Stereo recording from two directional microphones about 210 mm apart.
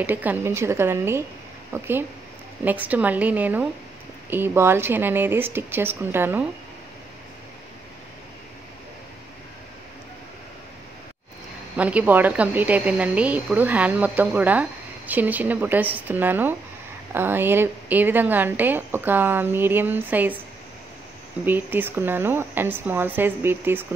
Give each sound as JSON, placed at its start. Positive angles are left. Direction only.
{"t": 0.0, "sound": "a woman's voice", "side_deg": -10}
{"t": 11.7, "sound": "a woman's voice", "side_deg": -5}
{"t": 21.5, "sound": "a woman's voice", "side_deg": -10}